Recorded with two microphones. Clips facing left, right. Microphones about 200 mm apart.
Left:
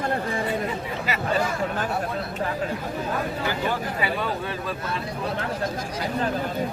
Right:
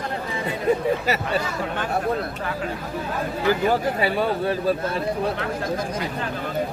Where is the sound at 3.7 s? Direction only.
40° right (ahead or behind).